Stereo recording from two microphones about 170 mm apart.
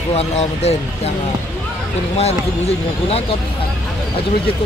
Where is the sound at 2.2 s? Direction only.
35° left (ahead or behind).